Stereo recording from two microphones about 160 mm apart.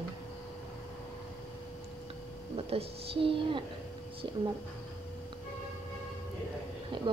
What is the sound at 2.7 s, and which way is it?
Speech, 35° right (ahead or behind).